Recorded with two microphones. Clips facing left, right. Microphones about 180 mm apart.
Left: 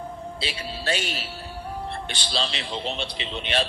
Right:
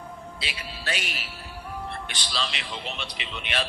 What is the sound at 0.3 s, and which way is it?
Speech, 30° left (ahead or behind).